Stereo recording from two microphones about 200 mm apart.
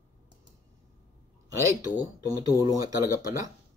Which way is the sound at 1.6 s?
15° right (ahead or behind).